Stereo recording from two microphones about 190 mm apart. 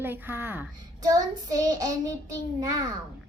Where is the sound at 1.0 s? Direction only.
20° right (ahead or behind).